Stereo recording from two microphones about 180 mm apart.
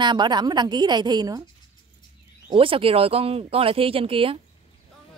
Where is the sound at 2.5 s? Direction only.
30° right (ahead or behind).